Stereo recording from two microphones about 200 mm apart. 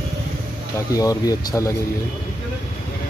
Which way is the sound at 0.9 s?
15° left (ahead or behind).